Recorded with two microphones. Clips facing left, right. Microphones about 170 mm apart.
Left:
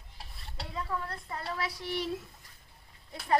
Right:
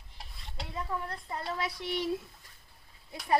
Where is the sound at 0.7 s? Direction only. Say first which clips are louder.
Even; 15° right (ahead or behind).